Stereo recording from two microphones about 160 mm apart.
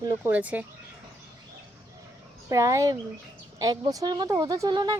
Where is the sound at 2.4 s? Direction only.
20° right (ahead or behind).